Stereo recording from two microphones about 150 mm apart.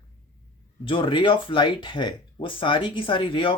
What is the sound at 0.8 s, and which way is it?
Speech, 35° left (ahead or behind).